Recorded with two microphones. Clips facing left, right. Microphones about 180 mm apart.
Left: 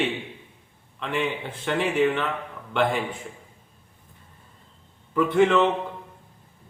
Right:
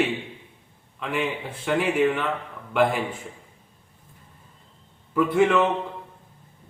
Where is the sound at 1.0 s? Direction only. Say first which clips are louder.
Even; 5° right (ahead or behind).